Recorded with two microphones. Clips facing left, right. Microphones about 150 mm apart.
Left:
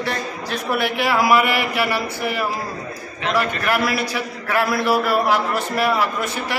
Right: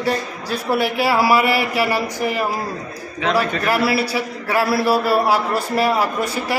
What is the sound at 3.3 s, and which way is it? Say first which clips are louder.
A man's voice: right 2 dB; 35° right (ahead or behind).